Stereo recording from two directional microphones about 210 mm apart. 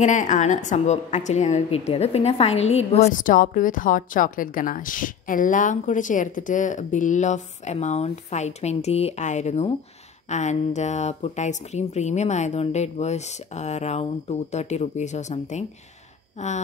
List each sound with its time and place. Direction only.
0.0 s a woman's voice: 35° left (ahead or behind)